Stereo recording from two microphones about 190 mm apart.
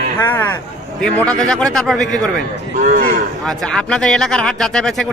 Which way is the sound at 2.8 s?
45° right (ahead or behind).